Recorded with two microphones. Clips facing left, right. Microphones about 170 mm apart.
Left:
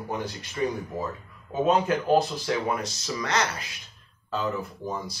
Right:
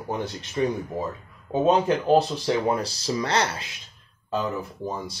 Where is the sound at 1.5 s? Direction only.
25° right (ahead or behind).